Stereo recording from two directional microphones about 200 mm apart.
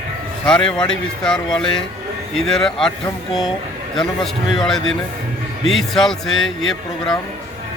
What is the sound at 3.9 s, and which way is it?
Speech, centre (ahead or behind).